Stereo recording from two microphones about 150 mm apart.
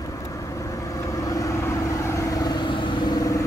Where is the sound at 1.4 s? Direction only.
20° left (ahead or behind).